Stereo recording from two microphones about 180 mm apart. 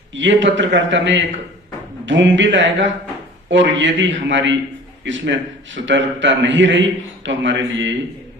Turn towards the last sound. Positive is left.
turn(degrees=-90)